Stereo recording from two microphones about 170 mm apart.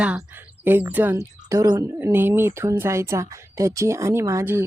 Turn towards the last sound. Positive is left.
turn(degrees=-15)  # may be behind; listen again after turning